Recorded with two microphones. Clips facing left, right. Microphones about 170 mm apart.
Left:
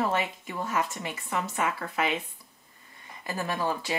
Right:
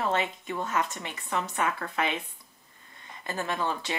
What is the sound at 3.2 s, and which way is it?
Speech, 25° right (ahead or behind).